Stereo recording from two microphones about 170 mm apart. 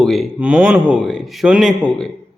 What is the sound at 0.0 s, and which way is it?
A man's voice, centre (ahead or behind).